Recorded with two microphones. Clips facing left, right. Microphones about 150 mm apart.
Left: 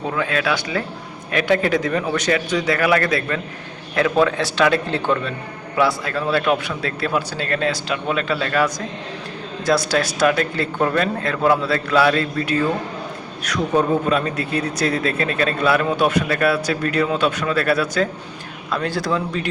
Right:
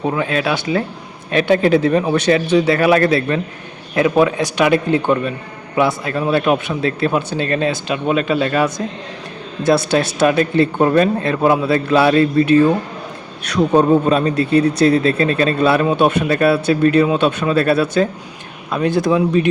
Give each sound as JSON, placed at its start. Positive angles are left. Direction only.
{"t": 0.0, "sound": "a man's voice", "side_deg": -20}